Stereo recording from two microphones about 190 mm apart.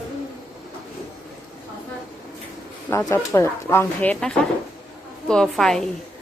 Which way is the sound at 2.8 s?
15° left (ahead or behind).